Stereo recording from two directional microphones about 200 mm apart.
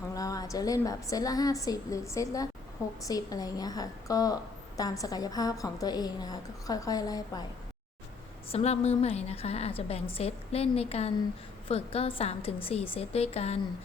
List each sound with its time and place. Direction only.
0.1 s a woman's voice: 15° left (ahead or behind)
8.5 s a woman's voice: 30° left (ahead or behind)